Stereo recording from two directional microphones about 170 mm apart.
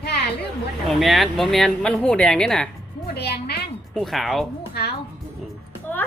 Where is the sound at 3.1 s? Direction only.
75° left (ahead or behind).